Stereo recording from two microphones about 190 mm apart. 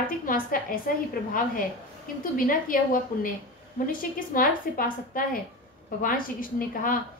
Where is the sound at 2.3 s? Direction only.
45° left (ahead or behind).